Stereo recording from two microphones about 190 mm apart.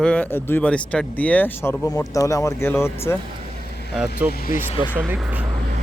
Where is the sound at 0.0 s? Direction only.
5° left (ahead or behind).